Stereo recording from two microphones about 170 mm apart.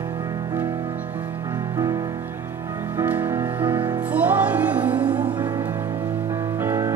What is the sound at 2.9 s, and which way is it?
Music, 10° right (ahead or behind).